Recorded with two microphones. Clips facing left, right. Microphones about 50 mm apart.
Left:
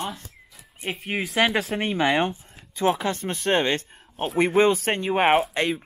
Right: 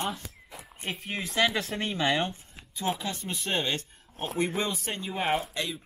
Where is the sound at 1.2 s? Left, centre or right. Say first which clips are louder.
Left 5 dB; left.